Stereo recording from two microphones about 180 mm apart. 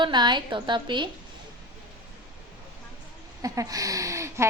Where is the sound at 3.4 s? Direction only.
20° right (ahead or behind).